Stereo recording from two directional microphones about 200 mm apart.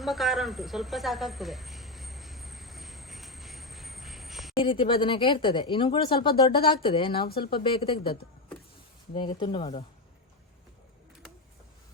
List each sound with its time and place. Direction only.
0.0 s snake: centre (ahead or behind)
4.5 s speech: 25° left (ahead or behind)
7.3 s speech: 50° left (ahead or behind)
7.5 s speech: 25° left (ahead or behind)